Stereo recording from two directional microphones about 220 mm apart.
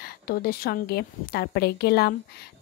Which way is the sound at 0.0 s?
45° left (ahead or behind).